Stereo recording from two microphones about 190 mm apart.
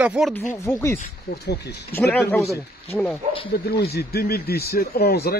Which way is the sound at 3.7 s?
55° left (ahead or behind).